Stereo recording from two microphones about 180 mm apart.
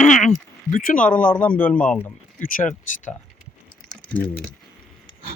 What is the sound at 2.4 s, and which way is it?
Speech, 50° left (ahead or behind).